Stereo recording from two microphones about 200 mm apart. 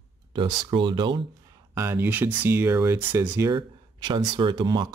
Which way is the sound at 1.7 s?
10° right (ahead or behind).